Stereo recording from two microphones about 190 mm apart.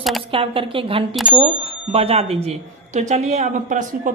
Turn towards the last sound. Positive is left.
turn(degrees=-40)  # may be behind; listen again after turning